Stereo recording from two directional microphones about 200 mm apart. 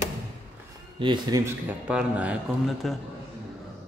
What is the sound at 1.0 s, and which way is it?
A man's voice, 20° right (ahead or behind).